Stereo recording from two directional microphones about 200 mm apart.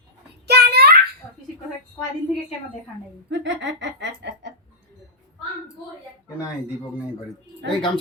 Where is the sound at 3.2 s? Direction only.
65° right (ahead or behind).